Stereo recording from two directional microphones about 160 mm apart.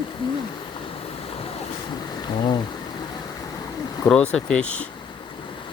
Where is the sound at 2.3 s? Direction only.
30° left (ahead or behind).